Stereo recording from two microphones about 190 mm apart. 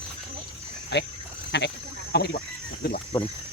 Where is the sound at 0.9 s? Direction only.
65° left (ahead or behind).